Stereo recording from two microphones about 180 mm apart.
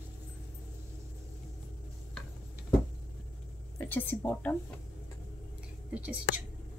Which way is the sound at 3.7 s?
10° left (ahead or behind).